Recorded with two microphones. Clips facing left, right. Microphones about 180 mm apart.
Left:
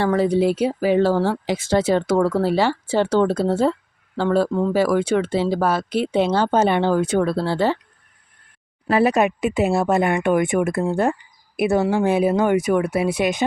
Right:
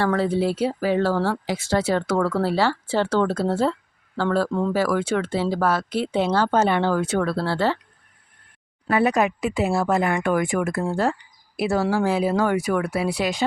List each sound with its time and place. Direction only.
0.0 s speech: 15° left (ahead or behind)
8.9 s speech: 30° left (ahead or behind)